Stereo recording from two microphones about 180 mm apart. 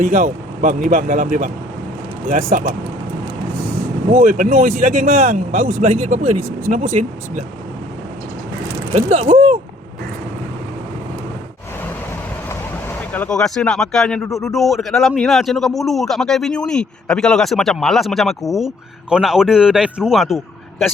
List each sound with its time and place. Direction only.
0.0 s speech: 45° right (ahead or behind)
2.5 s speech: 45° right (ahead or behind)
4.1 s speech: 45° right (ahead or behind)
8.9 s vehicle: 40° right (ahead or behind)
13.1 s speech: 5° left (ahead or behind)